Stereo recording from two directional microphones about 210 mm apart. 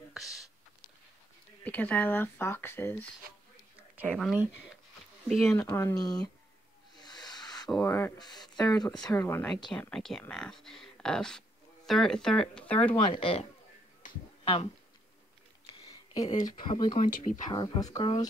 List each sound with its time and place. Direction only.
0.1 s speech: centre (ahead or behind)
1.6 s speech: 5° left (ahead or behind)
4.1 s speech: centre (ahead or behind)
5.5 s speech: 15° left (ahead or behind)
7.0 s snake: 20° left (ahead or behind)
7.7 s speech: 10° left (ahead or behind)
13.1 s speech: 25° left (ahead or behind)
15.6 s a sound: 20° left (ahead or behind)
17.0 s speech: 35° left (ahead or behind)
17.5 s speech: 20° left (ahead or behind)